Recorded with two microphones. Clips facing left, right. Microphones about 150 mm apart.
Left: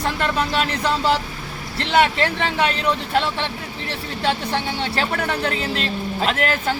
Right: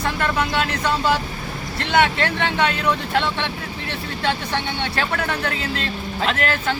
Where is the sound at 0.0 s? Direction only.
30° left (ahead or behind).